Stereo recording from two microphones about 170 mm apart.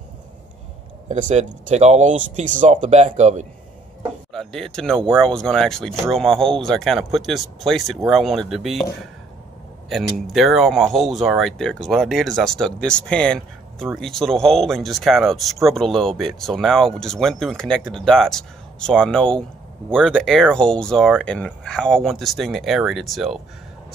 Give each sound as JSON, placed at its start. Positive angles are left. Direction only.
{"t": 1.0, "sound": "speech", "side_deg": -45}
{"t": 4.3, "sound": "speech", "side_deg": 0}
{"t": 9.8, "sound": "speech", "side_deg": 0}